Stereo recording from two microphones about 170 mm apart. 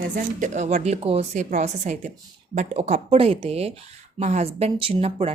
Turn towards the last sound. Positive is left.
turn(degrees=-35)  # may be behind; listen again after turning